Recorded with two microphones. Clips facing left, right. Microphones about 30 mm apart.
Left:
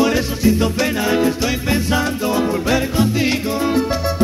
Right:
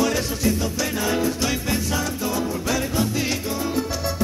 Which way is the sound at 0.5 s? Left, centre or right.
Left.